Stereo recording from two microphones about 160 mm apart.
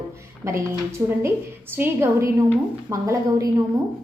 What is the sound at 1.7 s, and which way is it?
A woman's voice, 15° right (ahead or behind).